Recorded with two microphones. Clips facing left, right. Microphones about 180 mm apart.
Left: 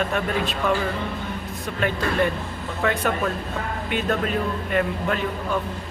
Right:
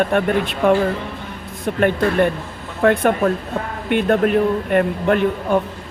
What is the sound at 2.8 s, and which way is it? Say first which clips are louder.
Speech: right 8 dB; 50° right (ahead or behind).